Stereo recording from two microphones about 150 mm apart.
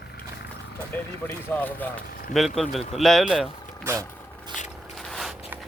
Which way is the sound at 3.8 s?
20° right (ahead or behind).